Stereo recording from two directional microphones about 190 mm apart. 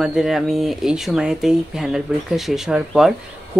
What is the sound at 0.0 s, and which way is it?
Speech, centre (ahead or behind).